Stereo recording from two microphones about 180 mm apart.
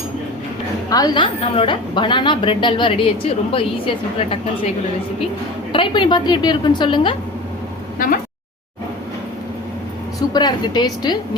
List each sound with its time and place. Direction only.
0.9 s a woman's voice: 20° left (ahead or behind)
5.7 s a woman's voice: 25° left (ahead or behind)
7.9 s a woman's voice: 50° left (ahead or behind)
10.2 s a woman's voice: 25° left (ahead or behind)